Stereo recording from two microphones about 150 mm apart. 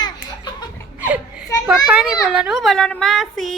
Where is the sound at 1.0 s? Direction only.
10° right (ahead or behind).